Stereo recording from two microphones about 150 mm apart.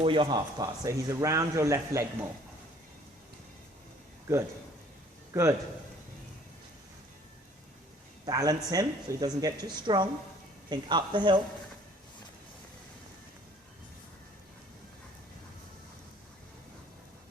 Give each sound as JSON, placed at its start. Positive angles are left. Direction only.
{"t": 0.0, "sound": "a man's voice", "side_deg": -35}
{"t": 5.3, "sound": "a man's voice", "side_deg": -20}
{"t": 8.2, "sound": "a man's voice", "side_deg": -25}